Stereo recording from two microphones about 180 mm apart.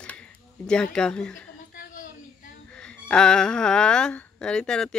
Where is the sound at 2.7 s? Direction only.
5° left (ahead or behind).